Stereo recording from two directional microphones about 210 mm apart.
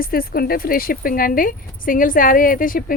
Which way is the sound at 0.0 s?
45° left (ahead or behind).